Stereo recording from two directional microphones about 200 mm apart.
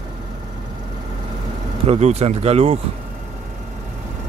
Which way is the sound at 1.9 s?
35° right (ahead or behind).